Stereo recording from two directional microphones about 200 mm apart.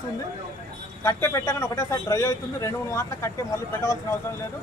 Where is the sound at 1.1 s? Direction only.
15° left (ahead or behind).